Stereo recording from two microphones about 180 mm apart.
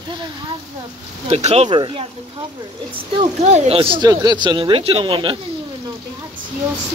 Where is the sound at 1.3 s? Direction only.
35° right (ahead or behind).